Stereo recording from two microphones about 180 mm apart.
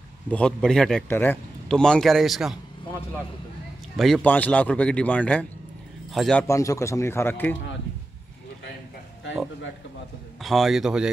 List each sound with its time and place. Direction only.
0.3 s a man's voice: 5° left (ahead or behind)
3.9 s a man's voice: centre (ahead or behind)
6.4 s speech: 15° left (ahead or behind)
10.4 s a man's voice: centre (ahead or behind)